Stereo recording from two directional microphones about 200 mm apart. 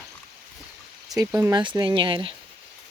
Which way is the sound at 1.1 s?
15° right (ahead or behind).